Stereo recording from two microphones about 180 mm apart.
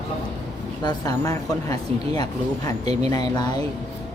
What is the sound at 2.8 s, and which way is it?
Speech, 35° right (ahead or behind).